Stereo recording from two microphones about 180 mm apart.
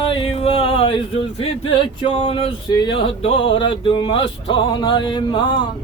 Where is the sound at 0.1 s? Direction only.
30° left (ahead or behind).